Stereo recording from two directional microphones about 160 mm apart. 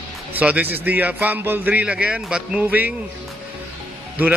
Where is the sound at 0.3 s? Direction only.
10° right (ahead or behind).